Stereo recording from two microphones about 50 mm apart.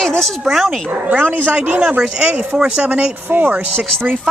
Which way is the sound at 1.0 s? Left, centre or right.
Right.